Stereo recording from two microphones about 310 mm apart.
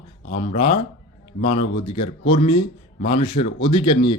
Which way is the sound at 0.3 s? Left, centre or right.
Left.